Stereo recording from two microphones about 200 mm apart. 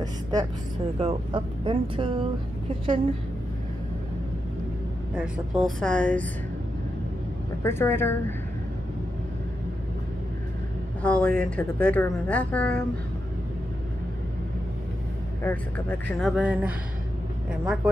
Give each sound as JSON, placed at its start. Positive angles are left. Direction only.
{"t": 0.0, "sound": "vehicle", "side_deg": -20}
{"t": 0.9, "sound": "speech", "side_deg": -30}
{"t": 5.1, "sound": "speech", "side_deg": 0}
{"t": 7.6, "sound": "a woman's voice", "side_deg": 10}
{"t": 11.0, "sound": "a woman's voice", "side_deg": 5}
{"t": 15.4, "sound": "speech", "side_deg": 5}